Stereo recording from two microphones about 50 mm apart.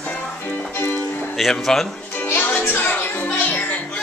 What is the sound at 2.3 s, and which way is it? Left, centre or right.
Music, left.